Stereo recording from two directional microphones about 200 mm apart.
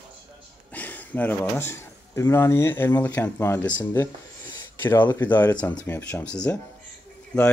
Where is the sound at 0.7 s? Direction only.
10° left (ahead or behind).